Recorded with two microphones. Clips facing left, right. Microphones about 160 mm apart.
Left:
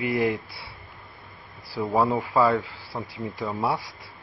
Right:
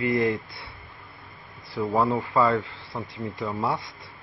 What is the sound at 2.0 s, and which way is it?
Speech, 20° left (ahead or behind).